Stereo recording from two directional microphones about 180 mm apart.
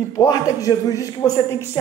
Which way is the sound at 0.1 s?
20° left (ahead or behind).